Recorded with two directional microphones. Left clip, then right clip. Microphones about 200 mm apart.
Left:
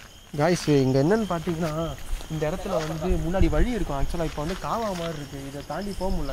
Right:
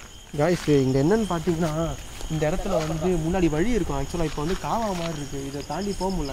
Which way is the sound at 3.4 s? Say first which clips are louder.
Even; 15° left (ahead or behind).